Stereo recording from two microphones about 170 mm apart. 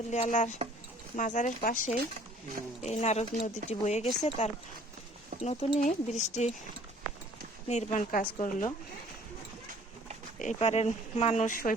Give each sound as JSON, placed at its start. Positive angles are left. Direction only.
{"t": 0.1, "sound": "speech", "side_deg": 45}
{"t": 7.7, "sound": "speech", "side_deg": 45}
{"t": 10.3, "sound": "speech", "side_deg": 45}